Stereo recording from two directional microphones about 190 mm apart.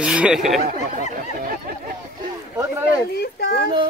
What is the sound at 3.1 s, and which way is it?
Speech, 55° left (ahead or behind).